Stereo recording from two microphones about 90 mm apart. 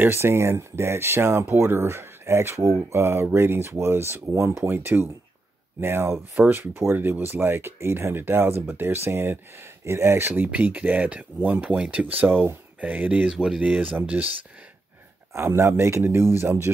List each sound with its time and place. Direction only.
0.0 s speech: 25° right (ahead or behind)
15.3 s speech: 30° right (ahead or behind)